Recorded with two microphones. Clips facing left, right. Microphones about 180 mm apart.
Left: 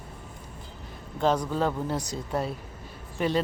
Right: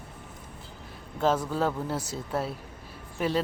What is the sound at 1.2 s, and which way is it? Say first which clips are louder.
Speech: left 1 dB; 5° right (ahead or behind).